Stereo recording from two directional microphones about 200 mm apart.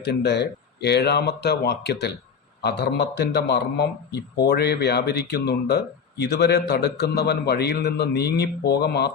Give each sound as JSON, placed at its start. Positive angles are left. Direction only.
{"t": 0.0, "sound": "speech", "side_deg": 55}